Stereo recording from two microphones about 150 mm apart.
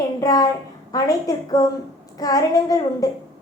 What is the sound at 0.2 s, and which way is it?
Speech, 25° left (ahead or behind).